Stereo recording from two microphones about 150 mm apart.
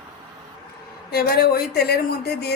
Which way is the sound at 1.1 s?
90° left.